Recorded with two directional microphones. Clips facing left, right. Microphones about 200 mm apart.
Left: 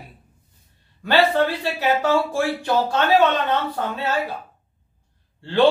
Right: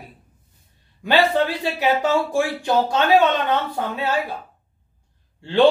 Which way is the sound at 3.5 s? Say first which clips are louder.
Right 1 dB; 15° right (ahead or behind).